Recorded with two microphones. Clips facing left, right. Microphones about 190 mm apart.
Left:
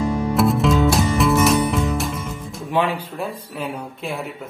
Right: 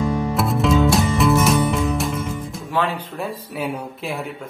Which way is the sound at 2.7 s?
15° left (ahead or behind).